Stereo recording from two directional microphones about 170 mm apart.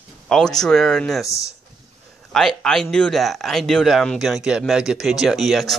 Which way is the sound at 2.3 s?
Centre (ahead or behind).